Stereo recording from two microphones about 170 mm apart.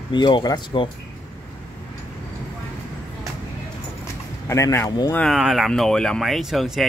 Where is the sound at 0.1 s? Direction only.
25° left (ahead or behind).